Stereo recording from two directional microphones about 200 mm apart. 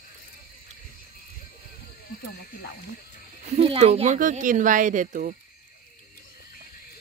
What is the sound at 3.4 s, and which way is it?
Speech, 30° right (ahead or behind).